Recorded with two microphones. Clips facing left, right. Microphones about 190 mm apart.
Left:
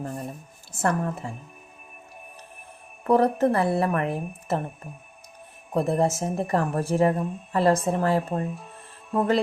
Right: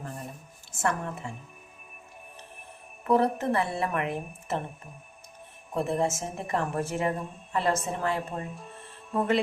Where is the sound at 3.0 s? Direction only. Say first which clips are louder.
Left 5 dB; 35° left (ahead or behind).